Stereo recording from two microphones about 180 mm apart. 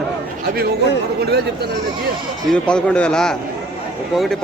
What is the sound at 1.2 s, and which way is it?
Speech, 60° right (ahead or behind).